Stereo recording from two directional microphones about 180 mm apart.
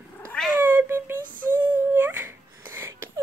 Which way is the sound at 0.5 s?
10° right (ahead or behind).